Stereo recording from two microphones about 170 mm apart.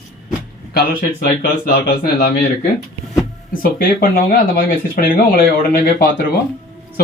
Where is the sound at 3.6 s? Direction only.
55° left (ahead or behind).